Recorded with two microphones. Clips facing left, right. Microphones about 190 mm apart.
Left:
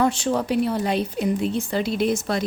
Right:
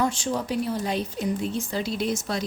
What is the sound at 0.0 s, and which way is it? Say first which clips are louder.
A woman's voice: left 4 dB; 65° left (ahead or behind).